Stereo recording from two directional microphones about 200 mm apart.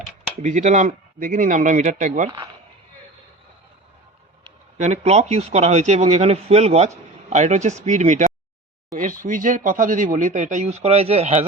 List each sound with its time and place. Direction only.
0.4 s a man's voice: 35° right (ahead or behind)
4.8 s a man's voice: 35° right (ahead or behind)